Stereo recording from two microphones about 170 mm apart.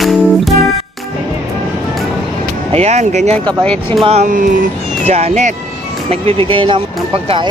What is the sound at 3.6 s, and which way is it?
Speech, 5° left (ahead or behind).